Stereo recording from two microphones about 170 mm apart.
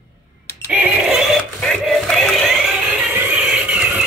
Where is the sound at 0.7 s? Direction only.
5° right (ahead or behind).